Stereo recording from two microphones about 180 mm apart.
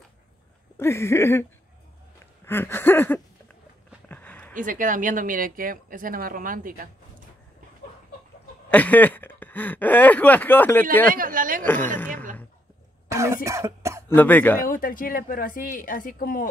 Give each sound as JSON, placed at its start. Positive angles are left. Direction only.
{"t": 0.7, "sound": "speech", "side_deg": 15}
{"t": 2.4, "sound": "a sound", "side_deg": 10}
{"t": 4.6, "sound": "a woman's voice", "side_deg": -45}
{"t": 8.6, "sound": "speech", "side_deg": 10}
{"t": 11.1, "sound": "a woman's voice", "side_deg": -50}
{"t": 11.6, "sound": "speech", "side_deg": 10}
{"t": 13.1, "sound": "cough", "side_deg": -15}
{"t": 14.0, "sound": "speech", "side_deg": 10}
{"t": 14.6, "sound": "a woman's voice", "side_deg": 50}